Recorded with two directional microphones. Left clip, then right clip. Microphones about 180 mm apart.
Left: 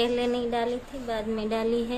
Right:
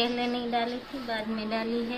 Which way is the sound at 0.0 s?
75° left (ahead or behind).